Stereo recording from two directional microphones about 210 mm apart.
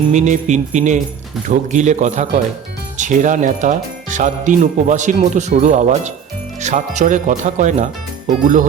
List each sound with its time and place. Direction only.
0.1 s speech: 35° right (ahead or behind)